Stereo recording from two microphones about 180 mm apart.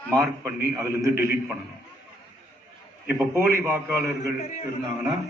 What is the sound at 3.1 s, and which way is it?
Speech, 15° right (ahead or behind).